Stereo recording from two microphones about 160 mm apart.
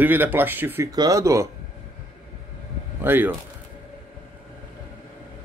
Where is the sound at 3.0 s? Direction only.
15° right (ahead or behind).